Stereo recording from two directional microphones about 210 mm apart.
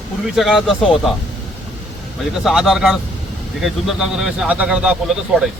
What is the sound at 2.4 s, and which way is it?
Speech, centre (ahead or behind).